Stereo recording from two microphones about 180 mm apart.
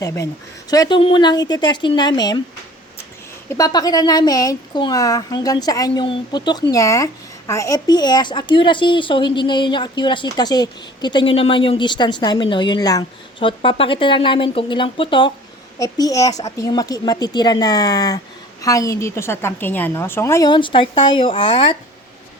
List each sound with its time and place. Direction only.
0.0 s speech: 20° left (ahead or behind)
3.5 s speech: 20° left (ahead or behind)